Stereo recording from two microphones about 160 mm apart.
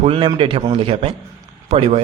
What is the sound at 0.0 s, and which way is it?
A man's voice, 35° right (ahead or behind).